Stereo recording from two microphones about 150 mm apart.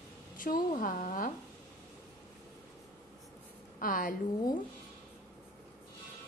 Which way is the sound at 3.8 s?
70° left (ahead or behind).